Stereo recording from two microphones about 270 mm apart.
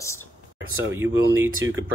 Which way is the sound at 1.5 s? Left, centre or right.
Right.